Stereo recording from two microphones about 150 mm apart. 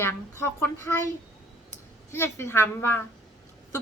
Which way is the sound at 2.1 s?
15° left (ahead or behind).